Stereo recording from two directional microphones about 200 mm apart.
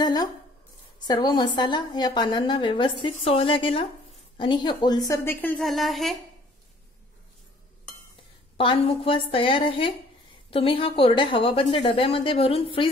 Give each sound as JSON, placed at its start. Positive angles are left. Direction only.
{"t": 0.0, "sound": "a sound", "side_deg": 20}
{"t": 0.9, "sound": "a woman's voice", "side_deg": 20}
{"t": 8.5, "sound": "a woman's voice", "side_deg": 25}